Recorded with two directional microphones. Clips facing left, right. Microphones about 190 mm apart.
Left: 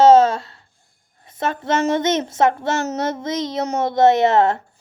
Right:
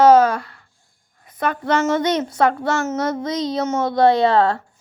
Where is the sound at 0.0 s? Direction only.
25° left (ahead or behind).